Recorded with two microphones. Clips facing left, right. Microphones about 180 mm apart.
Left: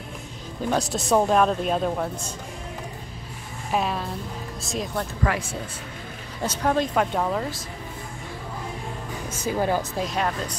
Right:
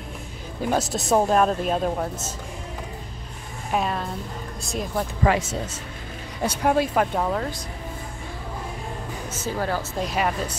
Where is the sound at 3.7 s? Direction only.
Centre (ahead or behind).